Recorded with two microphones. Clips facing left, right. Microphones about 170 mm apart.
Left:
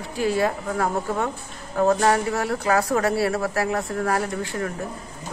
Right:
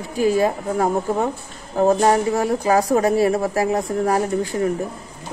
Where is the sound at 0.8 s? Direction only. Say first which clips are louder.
Right 5 dB; 30° right (ahead or behind).